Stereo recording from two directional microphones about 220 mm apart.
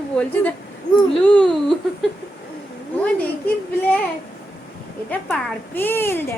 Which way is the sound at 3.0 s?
5° left (ahead or behind).